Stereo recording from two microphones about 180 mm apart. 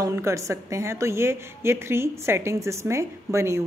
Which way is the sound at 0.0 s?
15° right (ahead or behind).